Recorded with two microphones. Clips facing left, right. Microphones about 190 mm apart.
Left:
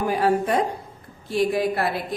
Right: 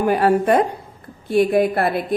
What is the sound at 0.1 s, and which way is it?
A woman's voice, 60° right (ahead or behind).